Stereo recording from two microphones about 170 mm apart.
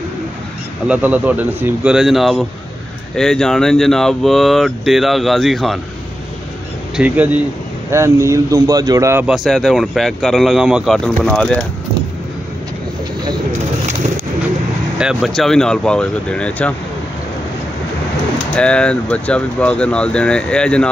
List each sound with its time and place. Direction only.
0.8 s speech: 10° right (ahead or behind)
7.0 s a man's voice: 10° right (ahead or behind)
9.2 s speech: centre (ahead or behind)
15.0 s speech: 5° right (ahead or behind)
18.6 s speech: 5° left (ahead or behind)